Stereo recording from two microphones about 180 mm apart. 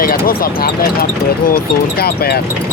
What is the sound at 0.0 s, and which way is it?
Speech, 55° left (ahead or behind).